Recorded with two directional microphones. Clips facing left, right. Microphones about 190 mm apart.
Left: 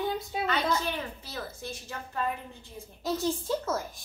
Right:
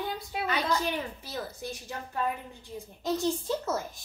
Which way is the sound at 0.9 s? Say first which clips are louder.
Right 2 dB; 15° right (ahead or behind).